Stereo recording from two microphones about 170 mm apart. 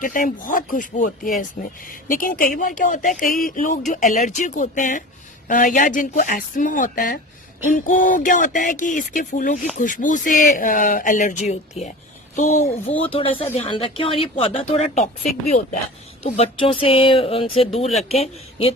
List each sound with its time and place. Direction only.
0.0 s speech: 50° left (ahead or behind)
11.8 s speech: 35° left (ahead or behind)
14.9 s speech: 50° left (ahead or behind)
16.2 s speech: 35° left (ahead or behind)